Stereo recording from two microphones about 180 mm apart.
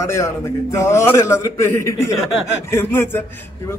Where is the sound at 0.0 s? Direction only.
15° left (ahead or behind).